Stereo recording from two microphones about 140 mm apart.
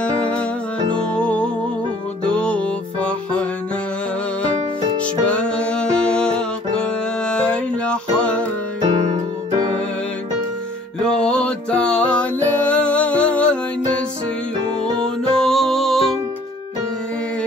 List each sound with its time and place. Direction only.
0.0 s music: 10° left (ahead or behind)
5.2 s music: 10° left (ahead or behind)
8.8 s music: 50° right (ahead or behind)
11.0 s music: 5° left (ahead or behind)
15.4 s music: centre (ahead or behind)